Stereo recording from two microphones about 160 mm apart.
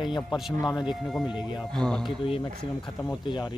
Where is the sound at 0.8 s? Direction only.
Centre (ahead or behind).